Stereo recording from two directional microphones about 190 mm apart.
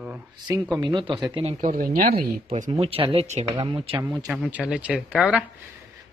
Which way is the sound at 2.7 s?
30° right (ahead or behind).